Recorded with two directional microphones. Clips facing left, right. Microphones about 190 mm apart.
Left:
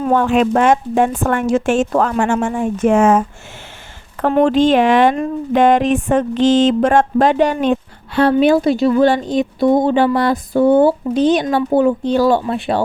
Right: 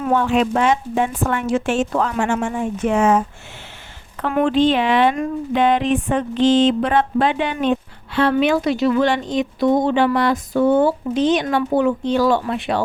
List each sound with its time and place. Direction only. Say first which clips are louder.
0.1 s speech: left 3 dB; 50° left (ahead or behind)
4.3 s speech: left 4 dB; 35° left (ahead or behind)